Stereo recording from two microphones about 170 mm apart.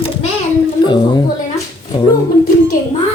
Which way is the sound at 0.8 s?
25° left (ahead or behind).